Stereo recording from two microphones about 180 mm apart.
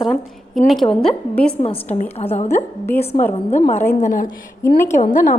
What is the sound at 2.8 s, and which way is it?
Speech, 10° left (ahead or behind).